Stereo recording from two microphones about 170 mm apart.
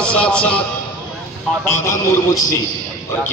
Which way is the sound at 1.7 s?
20° left (ahead or behind).